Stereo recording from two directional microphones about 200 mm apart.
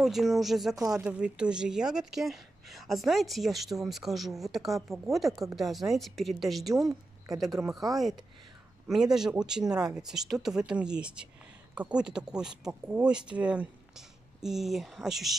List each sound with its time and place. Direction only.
0.0 s speech: centre (ahead or behind)
6.7 s a woman's voice: 15° right (ahead or behind)
8.8 s speech: centre (ahead or behind)